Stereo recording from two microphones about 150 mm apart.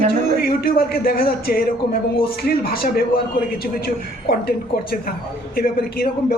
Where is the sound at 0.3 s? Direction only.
90° left.